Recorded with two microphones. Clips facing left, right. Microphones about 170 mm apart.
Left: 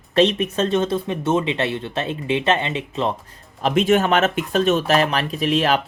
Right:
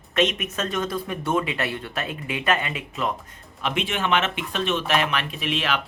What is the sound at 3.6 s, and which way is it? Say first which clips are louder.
Speech: left 10 dB; 40° left (ahead or behind).